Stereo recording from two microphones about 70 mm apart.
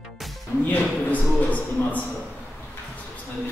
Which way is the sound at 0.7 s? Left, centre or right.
Left.